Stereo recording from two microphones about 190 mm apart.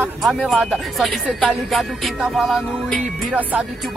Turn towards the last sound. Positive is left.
turn(degrees=0)  # may be behind; listen again after turning